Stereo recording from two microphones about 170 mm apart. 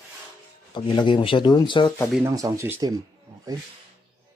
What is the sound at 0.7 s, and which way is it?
Speech, 25° left (ahead or behind).